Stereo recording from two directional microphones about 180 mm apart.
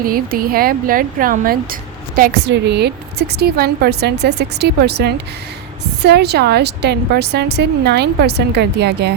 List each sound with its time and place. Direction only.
0.0 s speech: 55° right (ahead or behind)
2.5 s a woman's voice: 70° right (ahead or behind)